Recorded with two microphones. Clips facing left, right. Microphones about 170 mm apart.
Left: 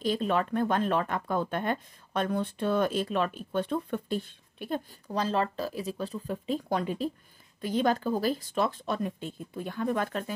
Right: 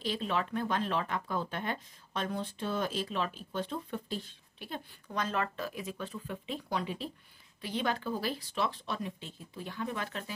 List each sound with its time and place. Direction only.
0.0 s speech: 45° left (ahead or behind)